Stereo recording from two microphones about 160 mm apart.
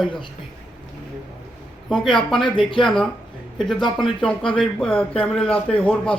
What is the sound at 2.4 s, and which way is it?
Speech, 30° left (ahead or behind).